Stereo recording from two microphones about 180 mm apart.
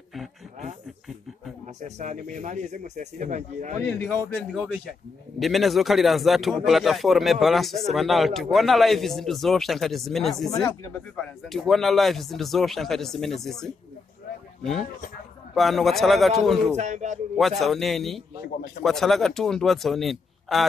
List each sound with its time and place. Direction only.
1.8 s speech: 40° right (ahead or behind)
3.8 s speech: 10° left (ahead or behind)
4.4 s speech: centre (ahead or behind)
15.5 s speech: centre (ahead or behind)
16.7 s speech: 40° right (ahead or behind)
17.4 s speech: centre (ahead or behind)